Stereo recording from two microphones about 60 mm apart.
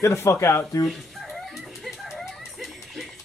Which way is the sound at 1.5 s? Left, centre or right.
Centre.